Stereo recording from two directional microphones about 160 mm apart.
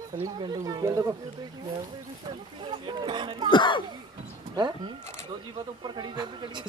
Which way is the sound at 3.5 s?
30° left (ahead or behind).